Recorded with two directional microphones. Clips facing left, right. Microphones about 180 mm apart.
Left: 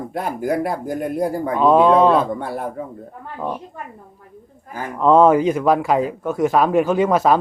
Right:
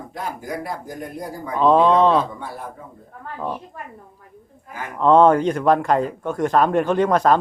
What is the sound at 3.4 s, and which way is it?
Speech, 10° left (ahead or behind).